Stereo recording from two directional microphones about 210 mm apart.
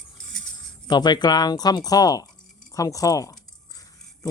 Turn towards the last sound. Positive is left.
turn(degrees=15)  # may be behind; listen again after turning